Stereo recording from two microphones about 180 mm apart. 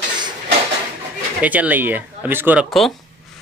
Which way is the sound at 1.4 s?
10° right (ahead or behind).